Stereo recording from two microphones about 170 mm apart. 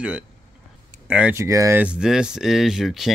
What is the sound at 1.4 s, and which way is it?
Speech, 20° right (ahead or behind).